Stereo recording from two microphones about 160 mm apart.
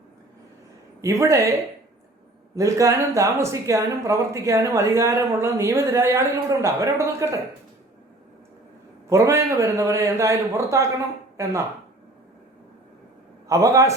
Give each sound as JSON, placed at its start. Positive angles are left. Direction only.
{"t": 1.0, "sound": "speech", "side_deg": -20}
{"t": 2.6, "sound": "speech", "side_deg": -20}
{"t": 9.0, "sound": "speech", "side_deg": -20}
{"t": 13.5, "sound": "speech", "side_deg": -20}